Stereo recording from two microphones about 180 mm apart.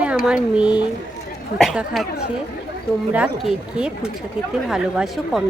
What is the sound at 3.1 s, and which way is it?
A woman's voice, 5° right (ahead or behind).